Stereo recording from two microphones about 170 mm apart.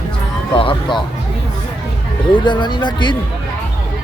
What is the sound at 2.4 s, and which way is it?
Speech, 25° left (ahead or behind).